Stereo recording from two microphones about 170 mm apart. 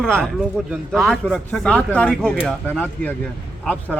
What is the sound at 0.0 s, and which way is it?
Speech, 5° left (ahead or behind).